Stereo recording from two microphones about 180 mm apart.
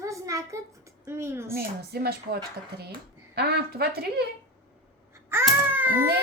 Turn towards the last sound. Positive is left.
turn(degrees=-10)  # may be behind; listen again after turning